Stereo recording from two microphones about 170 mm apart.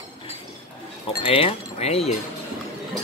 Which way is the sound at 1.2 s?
35° left (ahead or behind).